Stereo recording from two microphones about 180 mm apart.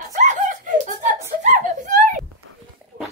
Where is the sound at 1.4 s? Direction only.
45° right (ahead or behind).